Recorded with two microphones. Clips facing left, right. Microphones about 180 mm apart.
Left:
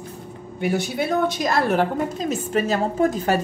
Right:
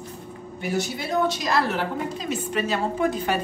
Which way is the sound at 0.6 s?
55° left (ahead or behind).